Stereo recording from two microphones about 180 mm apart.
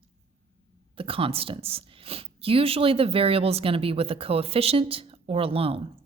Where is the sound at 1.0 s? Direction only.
30° right (ahead or behind).